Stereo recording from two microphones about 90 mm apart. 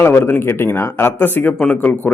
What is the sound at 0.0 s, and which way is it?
Speech, 25° left (ahead or behind).